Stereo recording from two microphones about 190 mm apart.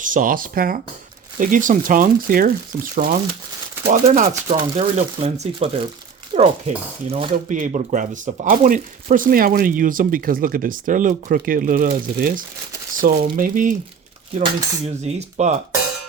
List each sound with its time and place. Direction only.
0.0 s speech: 45° right (ahead or behind)